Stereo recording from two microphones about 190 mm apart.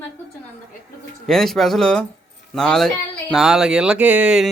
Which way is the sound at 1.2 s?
Centre (ahead or behind).